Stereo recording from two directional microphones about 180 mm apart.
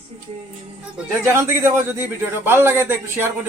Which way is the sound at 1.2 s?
15° right (ahead or behind).